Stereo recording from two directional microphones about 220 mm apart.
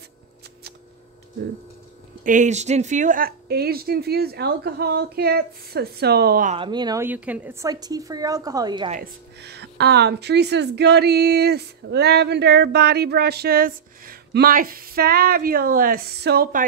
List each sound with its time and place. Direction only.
2.2 s speech: 35° right (ahead or behind)
6.5 s a woman's voice: 20° right (ahead or behind)
8.9 s speech: 45° right (ahead or behind)